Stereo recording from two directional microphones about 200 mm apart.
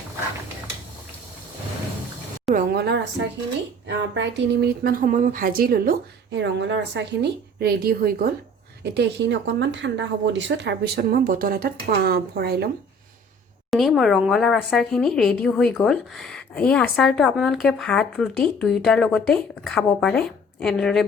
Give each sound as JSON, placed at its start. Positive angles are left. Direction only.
{"t": 2.6, "sound": "a sound", "side_deg": -55}
{"t": 3.8, "sound": "speech", "side_deg": -60}
{"t": 6.4, "sound": "speech", "side_deg": -60}
{"t": 8.8, "sound": "speech", "side_deg": -60}
{"t": 13.7, "sound": "a woman's voice", "side_deg": 0}